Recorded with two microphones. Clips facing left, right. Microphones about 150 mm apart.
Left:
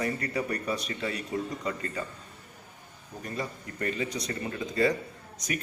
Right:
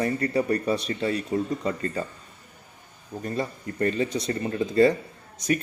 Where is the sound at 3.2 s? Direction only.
35° right (ahead or behind).